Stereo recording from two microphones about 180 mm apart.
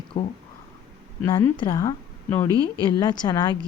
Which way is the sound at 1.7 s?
15° left (ahead or behind).